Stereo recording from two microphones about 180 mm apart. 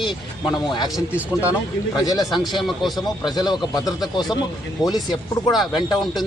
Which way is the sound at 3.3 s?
25° left (ahead or behind).